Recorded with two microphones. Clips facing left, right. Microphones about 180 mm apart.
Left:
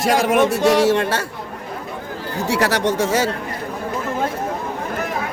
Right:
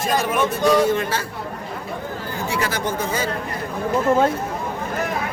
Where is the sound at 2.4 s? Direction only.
75° left (ahead or behind).